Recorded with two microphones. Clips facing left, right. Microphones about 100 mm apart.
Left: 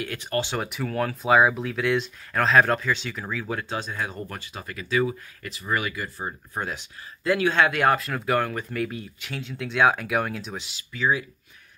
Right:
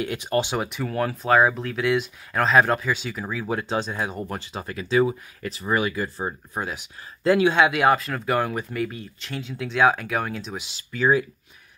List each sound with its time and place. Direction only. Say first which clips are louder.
0.0 s speech: right 4 dB; 20° right (ahead or behind)
0.6 s speech: right 1 dB; 5° right (ahead or behind)
3.4 s speech: right 8 dB; 25° right (ahead or behind)
6.5 s speech: right 1 dB; 5° right (ahead or behind)
8.5 s speech: right 2 dB; 10° right (ahead or behind)
8.8 s speech: even; centre (ahead or behind)
10.9 s speech: right 4 dB; 45° right (ahead or behind)